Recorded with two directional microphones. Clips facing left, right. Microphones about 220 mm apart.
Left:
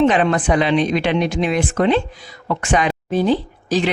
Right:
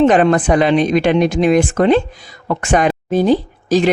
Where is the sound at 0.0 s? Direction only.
45° right (ahead or behind).